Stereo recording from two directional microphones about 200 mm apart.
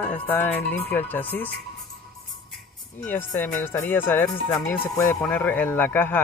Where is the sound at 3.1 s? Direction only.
10° left (ahead or behind).